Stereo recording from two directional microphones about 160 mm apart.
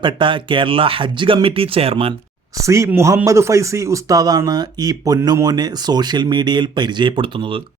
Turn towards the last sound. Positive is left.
turn(degrees=-30)  # may be behind; listen again after turning